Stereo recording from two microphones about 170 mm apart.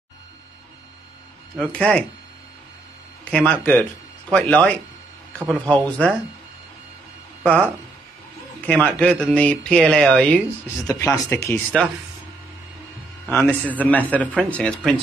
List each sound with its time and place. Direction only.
1.6 s speech: 5° left (ahead or behind)
3.3 s speech: 10° left (ahead or behind)
8.5 s speech: 5° left (ahead or behind)
10.8 s speech: 20° left (ahead or behind)
13.3 s speech: 10° left (ahead or behind)